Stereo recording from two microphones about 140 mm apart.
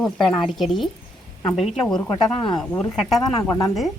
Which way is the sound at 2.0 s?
35° left (ahead or behind).